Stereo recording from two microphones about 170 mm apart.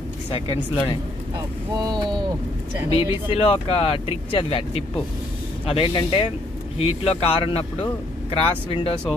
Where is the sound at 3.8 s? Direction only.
35° left (ahead or behind).